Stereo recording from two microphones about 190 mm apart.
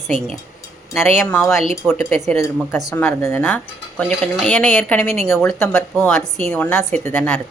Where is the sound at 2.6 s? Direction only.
Centre (ahead or behind).